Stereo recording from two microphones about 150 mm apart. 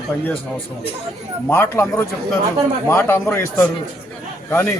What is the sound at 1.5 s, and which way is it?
Speech, 15° left (ahead or behind).